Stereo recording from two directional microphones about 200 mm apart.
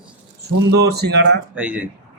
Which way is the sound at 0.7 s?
55° right (ahead or behind).